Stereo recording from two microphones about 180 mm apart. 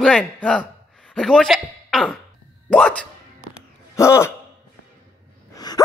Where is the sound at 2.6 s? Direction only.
5° left (ahead or behind).